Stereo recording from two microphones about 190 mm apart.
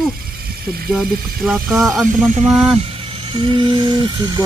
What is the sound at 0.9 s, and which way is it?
Speech, 5° right (ahead or behind).